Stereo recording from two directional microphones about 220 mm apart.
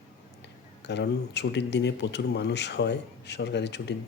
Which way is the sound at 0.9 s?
50° left (ahead or behind).